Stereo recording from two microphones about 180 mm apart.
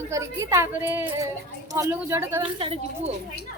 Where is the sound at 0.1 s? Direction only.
15° right (ahead or behind).